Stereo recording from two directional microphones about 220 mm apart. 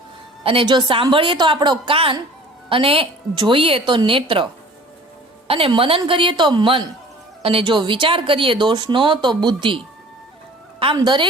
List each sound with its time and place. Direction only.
0.4 s speech: 20° right (ahead or behind)
5.5 s speech: 25° right (ahead or behind)